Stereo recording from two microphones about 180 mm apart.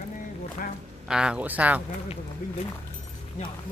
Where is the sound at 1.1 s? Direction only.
5° right (ahead or behind).